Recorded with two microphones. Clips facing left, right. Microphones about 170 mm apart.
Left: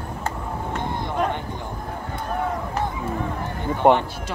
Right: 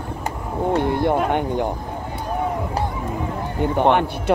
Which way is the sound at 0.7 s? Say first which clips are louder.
Right 8 dB; 60° right (ahead or behind).